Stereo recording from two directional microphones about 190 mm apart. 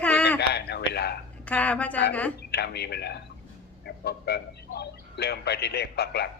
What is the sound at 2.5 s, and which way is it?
Speech, 60° left (ahead or behind).